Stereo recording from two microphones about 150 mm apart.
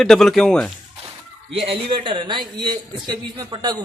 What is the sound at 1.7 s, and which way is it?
A man's voice, 35° right (ahead or behind).